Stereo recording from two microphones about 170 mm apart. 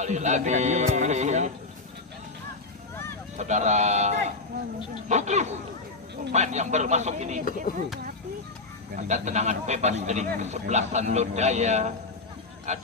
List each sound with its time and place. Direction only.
0.0 s speech: 45° right (ahead or behind)
3.3 s speech: 40° right (ahead or behind)
8.9 s speech: 45° right (ahead or behind)